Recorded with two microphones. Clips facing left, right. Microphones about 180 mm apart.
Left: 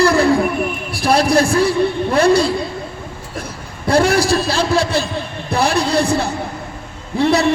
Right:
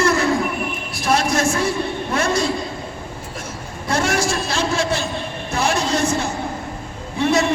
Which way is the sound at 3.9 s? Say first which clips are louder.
Left 7 dB; 35° left (ahead or behind).